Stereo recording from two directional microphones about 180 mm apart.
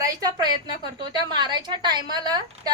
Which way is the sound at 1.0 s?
25° right (ahead or behind).